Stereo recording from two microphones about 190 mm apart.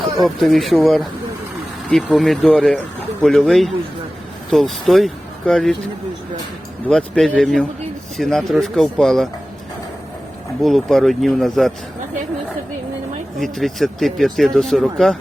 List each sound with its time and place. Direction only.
0.0 s speech: centre (ahead or behind)
6.8 s speech: centre (ahead or behind)
10.6 s speech: centre (ahead or behind)
13.4 s speech: centre (ahead or behind)